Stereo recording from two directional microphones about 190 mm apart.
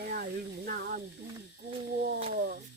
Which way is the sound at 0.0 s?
50° right (ahead or behind).